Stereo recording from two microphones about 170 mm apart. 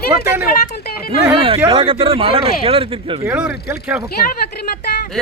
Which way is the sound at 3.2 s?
10° right (ahead or behind).